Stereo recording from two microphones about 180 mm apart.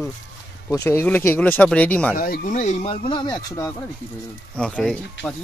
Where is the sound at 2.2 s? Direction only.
50° left (ahead or behind); by 3.7 s 20° left (ahead or behind).